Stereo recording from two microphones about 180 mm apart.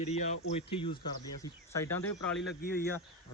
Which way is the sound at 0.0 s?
40° left (ahead or behind).